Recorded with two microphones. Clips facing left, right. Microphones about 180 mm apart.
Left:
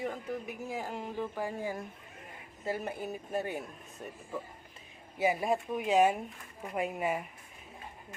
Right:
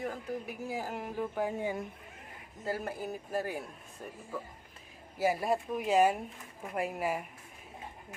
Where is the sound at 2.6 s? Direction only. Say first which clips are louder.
Even; centre (ahead or behind).